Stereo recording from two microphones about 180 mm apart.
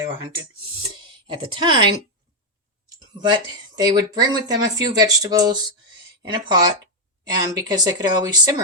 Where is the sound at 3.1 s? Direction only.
25° right (ahead or behind).